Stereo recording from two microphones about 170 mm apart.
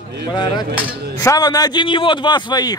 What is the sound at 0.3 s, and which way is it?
A man's voice, 25° left (ahead or behind).